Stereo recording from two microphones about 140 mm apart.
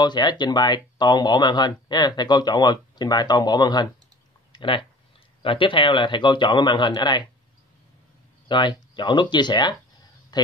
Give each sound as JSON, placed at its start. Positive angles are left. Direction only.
{"t": 0.0, "sound": "speech", "side_deg": 30}
{"t": 8.5, "sound": "speech", "side_deg": 35}